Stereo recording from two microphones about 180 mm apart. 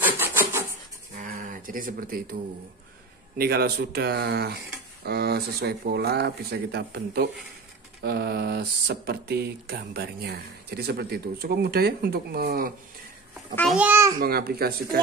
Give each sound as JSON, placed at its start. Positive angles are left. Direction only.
{"t": 0.2, "sound": "rub", "side_deg": -15}
{"t": 1.1, "sound": "a sound", "side_deg": -50}
{"t": 3.3, "sound": "speech", "side_deg": -60}
{"t": 13.7, "sound": "a child's voice", "side_deg": -10}
{"t": 14.2, "sound": "speech", "side_deg": -55}